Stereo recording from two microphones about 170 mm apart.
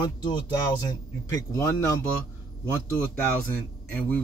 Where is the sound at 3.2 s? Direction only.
10° left (ahead or behind).